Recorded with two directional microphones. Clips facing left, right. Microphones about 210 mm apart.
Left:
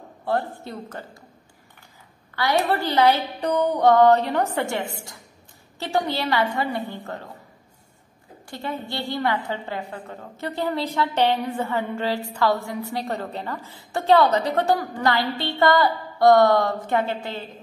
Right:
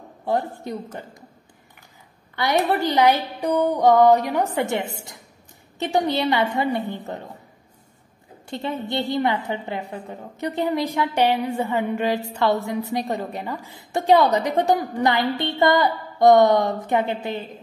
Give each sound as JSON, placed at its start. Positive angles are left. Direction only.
{"t": 0.2, "sound": "a woman's voice", "side_deg": -15}
{"t": 2.3, "sound": "a woman's voice", "side_deg": -20}
{"t": 8.5, "sound": "a woman's voice", "side_deg": -20}